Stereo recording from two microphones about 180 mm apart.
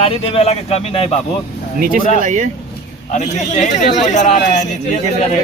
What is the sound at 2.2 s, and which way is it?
Speech, 45° right (ahead or behind).